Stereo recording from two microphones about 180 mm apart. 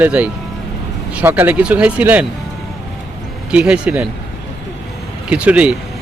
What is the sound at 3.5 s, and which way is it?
Speech, 5° right (ahead or behind).